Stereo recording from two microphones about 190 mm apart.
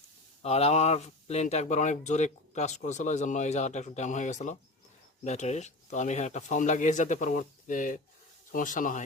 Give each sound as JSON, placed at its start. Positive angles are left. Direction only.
{"t": 0.4, "sound": "speech", "side_deg": 35}